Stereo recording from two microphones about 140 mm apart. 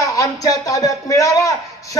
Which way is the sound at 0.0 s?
25° left (ahead or behind).